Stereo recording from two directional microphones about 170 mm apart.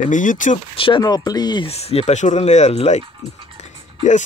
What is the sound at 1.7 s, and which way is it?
Speech, 35° left (ahead or behind).